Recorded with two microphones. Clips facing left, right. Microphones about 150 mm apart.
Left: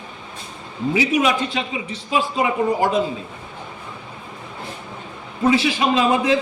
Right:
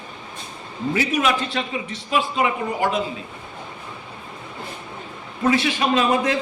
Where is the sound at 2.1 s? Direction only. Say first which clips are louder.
Left 1 dB; 30° left (ahead or behind).